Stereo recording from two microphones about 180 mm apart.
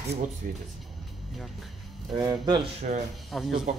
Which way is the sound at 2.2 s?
20° right (ahead or behind).